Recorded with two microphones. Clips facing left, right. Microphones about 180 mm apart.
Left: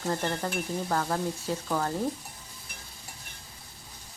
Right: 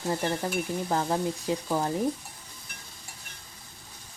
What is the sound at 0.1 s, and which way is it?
Speech, 10° right (ahead or behind).